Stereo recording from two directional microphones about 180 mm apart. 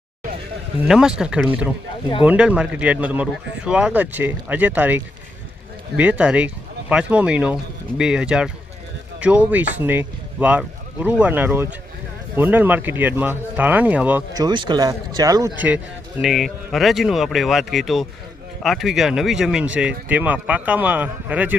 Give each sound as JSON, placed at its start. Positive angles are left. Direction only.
{"t": 0.8, "sound": "speech", "side_deg": -5}
{"t": 14.4, "sound": "speech", "side_deg": -25}
{"t": 15.5, "sound": "speech", "side_deg": -10}